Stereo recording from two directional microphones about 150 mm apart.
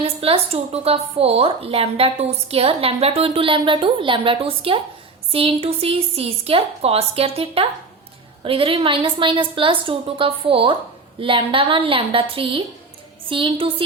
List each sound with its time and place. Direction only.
0.0 s speech: 40° right (ahead or behind)